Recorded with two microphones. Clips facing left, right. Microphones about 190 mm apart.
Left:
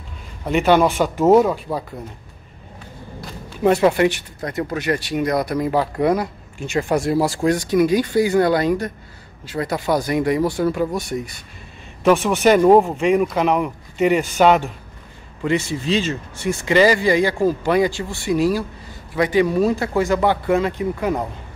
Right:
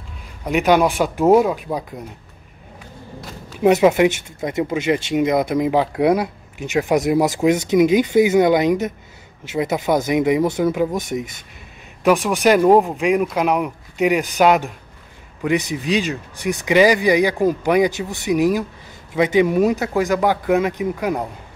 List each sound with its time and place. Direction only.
0.5 s speech: 10° right (ahead or behind)
3.6 s speech: 10° right (ahead or behind)
12.0 s speech: centre (ahead or behind); by 20.1 s 15° right (ahead or behind)
20.1 s speech: 5° right (ahead or behind)